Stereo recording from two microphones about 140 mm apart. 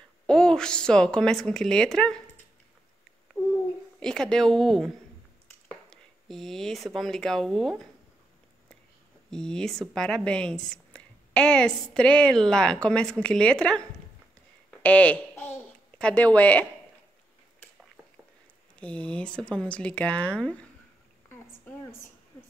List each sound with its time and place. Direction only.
0.3 s speech: 5° left (ahead or behind)
4.0 s speech: 5° left (ahead or behind)
9.3 s a child's voice: 5° left (ahead or behind)
18.8 s speech: 10° left (ahead or behind)
21.3 s a sound: 15° left (ahead or behind)